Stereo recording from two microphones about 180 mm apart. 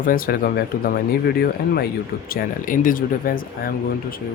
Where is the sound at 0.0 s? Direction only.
50° left (ahead or behind).